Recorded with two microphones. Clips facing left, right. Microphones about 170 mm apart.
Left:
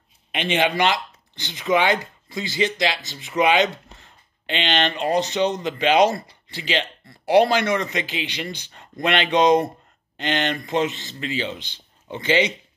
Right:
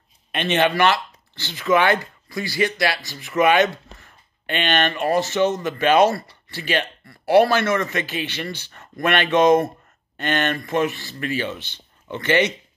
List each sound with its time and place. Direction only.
0.3 s speech: 10° left (ahead or behind)